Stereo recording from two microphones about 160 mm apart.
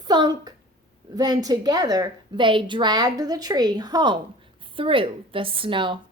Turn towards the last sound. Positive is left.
turn(degrees=-30)  # may be behind; listen again after turning